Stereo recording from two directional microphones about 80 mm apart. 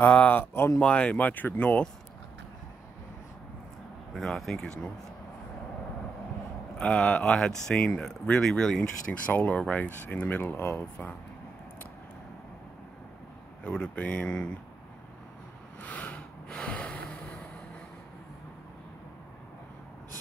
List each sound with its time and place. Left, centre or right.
0.0 s speech: left
0.7 s speech: centre
4.1 s speech: centre
6.8 s speech: centre
9.2 s speech: centre
13.7 s speech: left
15.8 s a sound: centre